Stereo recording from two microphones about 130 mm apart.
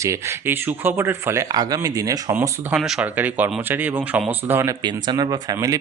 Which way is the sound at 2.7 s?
5° right (ahead or behind).